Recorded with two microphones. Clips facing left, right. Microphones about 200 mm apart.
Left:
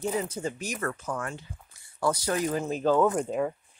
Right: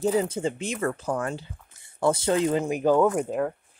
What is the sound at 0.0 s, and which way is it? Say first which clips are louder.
Speech: right 6 dB; 30° right (ahead or behind).